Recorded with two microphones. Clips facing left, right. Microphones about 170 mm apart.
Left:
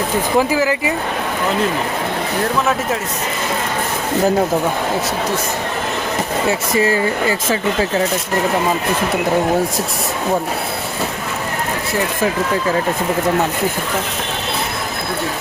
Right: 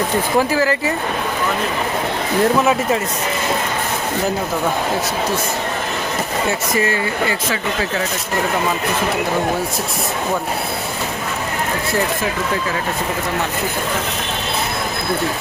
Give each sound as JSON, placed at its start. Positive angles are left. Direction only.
{"t": 0.3, "sound": "speech", "side_deg": 15}
{"t": 6.7, "sound": "speech", "side_deg": 35}